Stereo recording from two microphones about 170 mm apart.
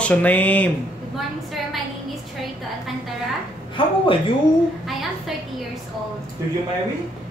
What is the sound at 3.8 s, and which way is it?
Speech, 30° left (ahead or behind).